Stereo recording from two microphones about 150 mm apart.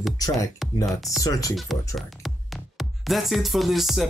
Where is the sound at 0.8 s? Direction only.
Centre (ahead or behind).